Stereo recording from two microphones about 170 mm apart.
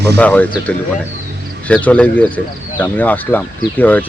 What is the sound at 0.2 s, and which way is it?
Speech, 10° left (ahead or behind).